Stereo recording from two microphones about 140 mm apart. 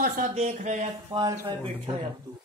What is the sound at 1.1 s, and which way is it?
Speech, 40° right (ahead or behind).